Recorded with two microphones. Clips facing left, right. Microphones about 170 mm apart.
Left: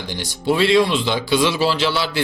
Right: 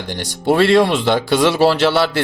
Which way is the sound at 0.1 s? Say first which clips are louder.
Right 4 dB; 60° right (ahead or behind).